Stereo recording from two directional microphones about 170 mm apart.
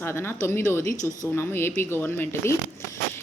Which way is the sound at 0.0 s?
15° left (ahead or behind).